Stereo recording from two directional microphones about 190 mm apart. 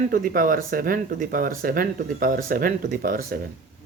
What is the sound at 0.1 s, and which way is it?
Speech, 45° right (ahead or behind).